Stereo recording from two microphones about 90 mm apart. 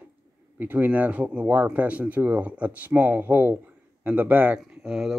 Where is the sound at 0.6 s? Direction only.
20° right (ahead or behind).